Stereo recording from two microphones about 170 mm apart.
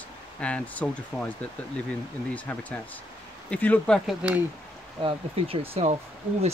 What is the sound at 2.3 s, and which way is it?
Speech, 10° left (ahead or behind).